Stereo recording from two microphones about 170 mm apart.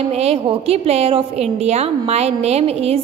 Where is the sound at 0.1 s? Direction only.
35° right (ahead or behind).